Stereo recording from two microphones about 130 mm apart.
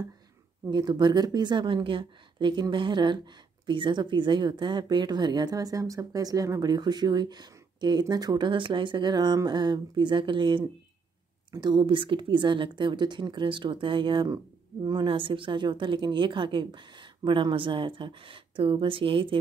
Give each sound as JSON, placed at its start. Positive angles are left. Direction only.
{"t": 0.7, "sound": "speech", "side_deg": -35}